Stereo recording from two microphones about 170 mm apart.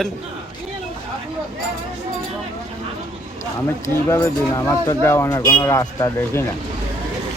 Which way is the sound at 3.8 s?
15° left (ahead or behind).